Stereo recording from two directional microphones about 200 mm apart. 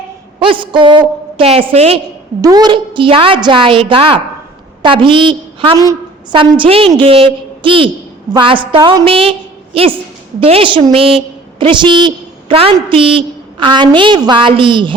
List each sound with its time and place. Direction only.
0.3 s a woman's voice: 25° right (ahead or behind)
2.4 s a woman's voice: 20° right (ahead or behind)